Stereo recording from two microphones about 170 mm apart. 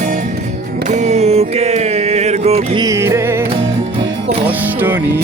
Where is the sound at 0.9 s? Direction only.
40° right (ahead or behind).